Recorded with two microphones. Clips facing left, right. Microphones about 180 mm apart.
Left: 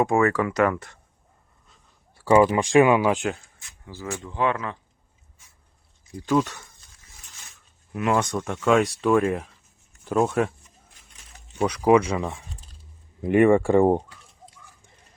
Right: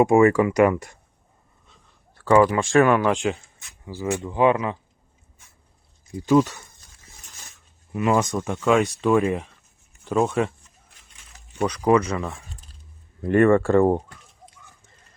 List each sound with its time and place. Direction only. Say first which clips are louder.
0.0 s speech: right 5 dB; 15° right (ahead or behind)
1.7 s speech: right 2 dB; 10° left (ahead or behind)
3.8 s speech: right 7 dB; 15° right (ahead or behind)
6.2 s speech: right 4 dB; 5° right (ahead or behind)
7.9 s speech: right 2 dB; centre (ahead or behind)
11.6 s speech: left 1 dB; 10° left (ahead or behind)